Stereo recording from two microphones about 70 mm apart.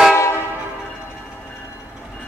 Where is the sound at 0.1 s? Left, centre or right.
Left.